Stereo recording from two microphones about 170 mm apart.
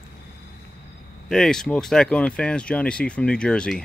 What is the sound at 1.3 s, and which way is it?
Speech, 5° left (ahead or behind).